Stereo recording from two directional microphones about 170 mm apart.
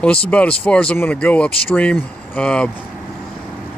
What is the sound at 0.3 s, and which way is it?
Speech, 5° left (ahead or behind).